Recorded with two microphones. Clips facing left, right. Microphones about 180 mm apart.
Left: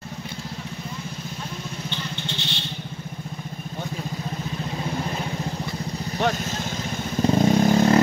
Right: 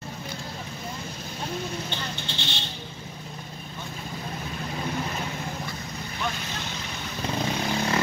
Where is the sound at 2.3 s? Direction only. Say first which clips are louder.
Left 2 dB; 35° right (ahead or behind).